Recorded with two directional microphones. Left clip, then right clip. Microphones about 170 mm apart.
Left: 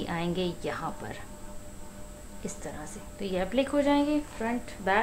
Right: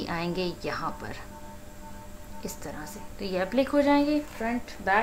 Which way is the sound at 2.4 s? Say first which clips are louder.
Right 1 dB; 5° right (ahead or behind).